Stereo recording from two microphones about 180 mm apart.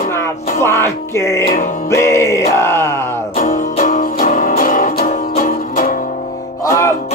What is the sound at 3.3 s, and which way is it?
Music, 45° left (ahead or behind).